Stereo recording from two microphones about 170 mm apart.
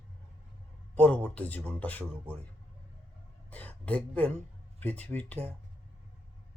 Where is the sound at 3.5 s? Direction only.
10° left (ahead or behind).